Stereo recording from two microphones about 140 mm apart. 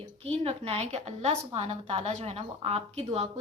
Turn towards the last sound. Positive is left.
turn(degrees=-45)  # may be behind; listen again after turning